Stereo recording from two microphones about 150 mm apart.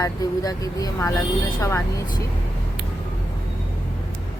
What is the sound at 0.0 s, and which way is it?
Speech, 25° left (ahead or behind).